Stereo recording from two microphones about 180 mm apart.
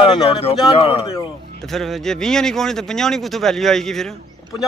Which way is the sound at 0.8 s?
35° left (ahead or behind).